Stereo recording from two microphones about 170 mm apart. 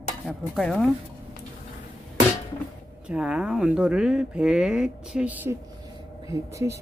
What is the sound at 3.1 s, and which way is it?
Speech, 5° right (ahead or behind).